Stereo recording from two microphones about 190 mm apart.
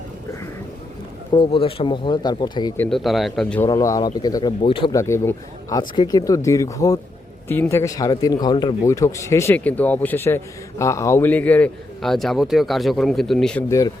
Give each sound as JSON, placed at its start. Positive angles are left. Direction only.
{"t": 1.3, "sound": "speech", "side_deg": 25}
{"t": 2.7, "sound": "speech", "side_deg": 5}
{"t": 3.6, "sound": "speech", "side_deg": 15}
{"t": 4.9, "sound": "a man's voice", "side_deg": 15}
{"t": 13.7, "sound": "a man's voice", "side_deg": 15}